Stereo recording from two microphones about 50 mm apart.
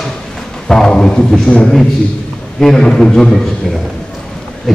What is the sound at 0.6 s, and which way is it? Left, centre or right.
A man's voice, centre.